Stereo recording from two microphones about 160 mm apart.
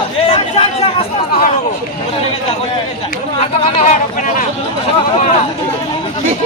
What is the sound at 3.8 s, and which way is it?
Speech, 45° left (ahead or behind).